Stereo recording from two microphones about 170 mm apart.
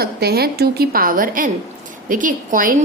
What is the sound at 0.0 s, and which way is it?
A woman's voice, 70° right (ahead or behind).